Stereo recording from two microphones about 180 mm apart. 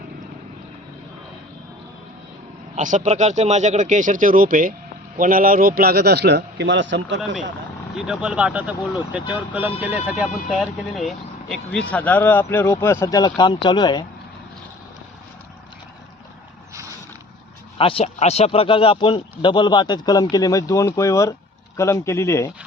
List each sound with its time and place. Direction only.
2.7 s a man's voice: 45° right (ahead or behind); by 7.2 s 90° right
7.9 s speech: 5° right (ahead or behind); by 14.0 s 25° left (ahead or behind)
17.7 s a man's voice: 30° left (ahead or behind); by 22.5 s 15° left (ahead or behind)